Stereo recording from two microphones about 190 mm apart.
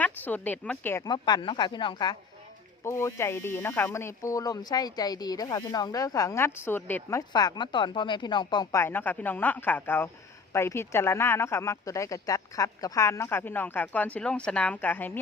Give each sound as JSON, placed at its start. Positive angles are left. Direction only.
{"t": 0.0, "sound": "speech", "side_deg": 10}
{"t": 1.0, "sound": "speech", "side_deg": 20}